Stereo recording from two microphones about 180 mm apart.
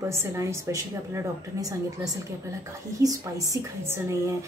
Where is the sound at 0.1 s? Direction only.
15° right (ahead or behind).